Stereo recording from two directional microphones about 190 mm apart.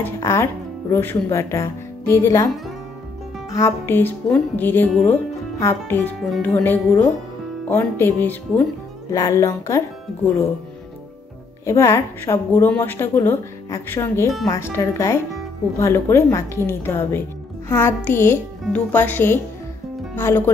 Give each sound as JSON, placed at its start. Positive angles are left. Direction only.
{"t": 0.0, "sound": "a woman's voice", "side_deg": 15}
{"t": 11.6, "sound": "a woman's voice", "side_deg": 15}